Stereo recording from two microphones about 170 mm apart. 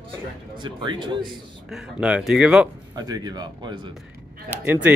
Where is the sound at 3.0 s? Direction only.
25° right (ahead or behind).